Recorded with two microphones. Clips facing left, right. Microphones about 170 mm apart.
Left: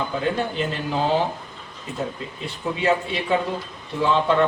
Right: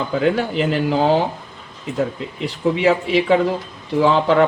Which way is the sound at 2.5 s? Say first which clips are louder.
Right 5 dB; 90° right.